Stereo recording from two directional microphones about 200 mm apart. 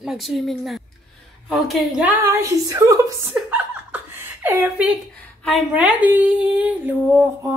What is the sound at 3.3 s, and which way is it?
Chuckle, 10° right (ahead or behind).